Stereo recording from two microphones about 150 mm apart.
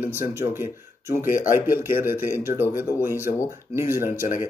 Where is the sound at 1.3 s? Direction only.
60° left (ahead or behind).